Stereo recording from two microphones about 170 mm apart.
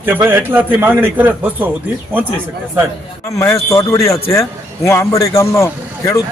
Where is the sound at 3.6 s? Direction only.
15° left (ahead or behind).